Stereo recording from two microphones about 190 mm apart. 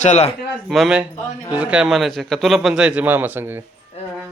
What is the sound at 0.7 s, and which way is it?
Speech, centre (ahead or behind).